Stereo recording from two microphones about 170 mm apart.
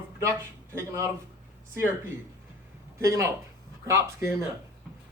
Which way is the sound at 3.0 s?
20° right (ahead or behind).